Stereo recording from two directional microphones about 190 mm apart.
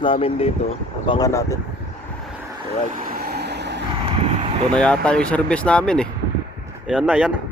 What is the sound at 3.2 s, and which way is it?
Vehicle, 60° right (ahead or behind).